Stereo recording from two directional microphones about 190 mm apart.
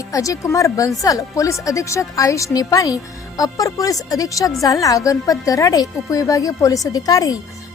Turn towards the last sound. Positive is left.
turn(degrees=20)  # may be behind; listen again after turning